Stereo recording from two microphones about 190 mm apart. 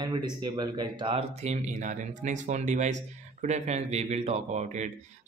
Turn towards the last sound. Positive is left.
turn(degrees=-35)  # may be behind; listen again after turning